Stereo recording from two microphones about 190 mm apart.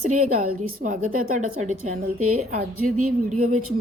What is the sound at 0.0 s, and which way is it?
A woman's voice, 40° right (ahead or behind).